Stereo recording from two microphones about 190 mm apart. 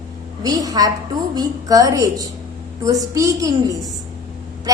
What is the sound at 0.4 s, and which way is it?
A woman's voice, 20° right (ahead or behind).